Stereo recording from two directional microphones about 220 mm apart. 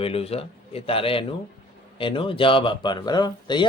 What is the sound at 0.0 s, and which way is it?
Speech, 25° left (ahead or behind).